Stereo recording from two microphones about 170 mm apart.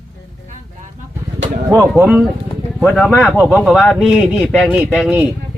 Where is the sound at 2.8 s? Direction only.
5° left (ahead or behind).